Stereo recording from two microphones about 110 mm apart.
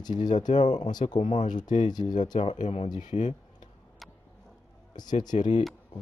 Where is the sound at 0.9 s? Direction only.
40° left (ahead or behind).